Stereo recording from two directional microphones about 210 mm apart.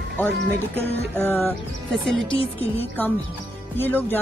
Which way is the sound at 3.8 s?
10° left (ahead or behind).